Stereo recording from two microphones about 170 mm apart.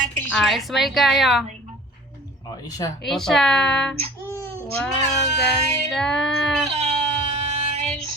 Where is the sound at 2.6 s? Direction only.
20° left (ahead or behind).